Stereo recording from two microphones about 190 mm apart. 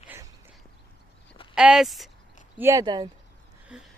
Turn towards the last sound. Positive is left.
turn(degrees=-5)  # may be behind; listen again after turning